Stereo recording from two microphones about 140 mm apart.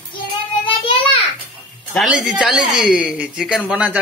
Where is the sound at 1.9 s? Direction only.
5° right (ahead or behind).